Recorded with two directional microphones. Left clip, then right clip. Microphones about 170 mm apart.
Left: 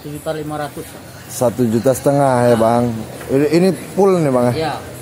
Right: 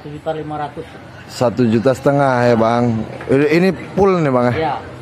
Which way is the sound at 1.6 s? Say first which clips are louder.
Right 1 dB; 10° right (ahead or behind).